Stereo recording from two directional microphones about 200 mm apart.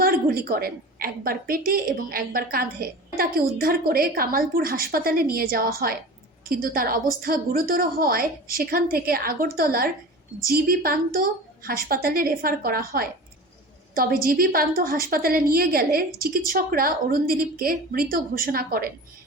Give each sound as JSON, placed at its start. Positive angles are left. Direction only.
{"t": 0.0, "sound": "a woman's voice", "side_deg": -45}